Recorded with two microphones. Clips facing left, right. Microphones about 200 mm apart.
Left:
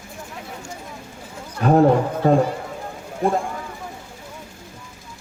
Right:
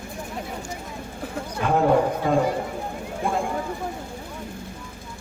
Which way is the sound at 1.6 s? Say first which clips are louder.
Left 6 dB; 40° left (ahead or behind).